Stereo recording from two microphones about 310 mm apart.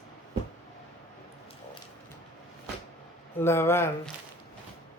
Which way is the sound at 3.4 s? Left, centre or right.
Centre.